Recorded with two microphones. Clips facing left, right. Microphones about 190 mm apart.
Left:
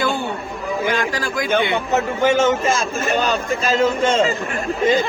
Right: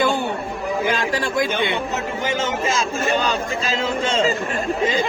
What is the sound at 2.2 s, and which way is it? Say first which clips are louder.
Speech: left 7 dB; 55° left (ahead or behind).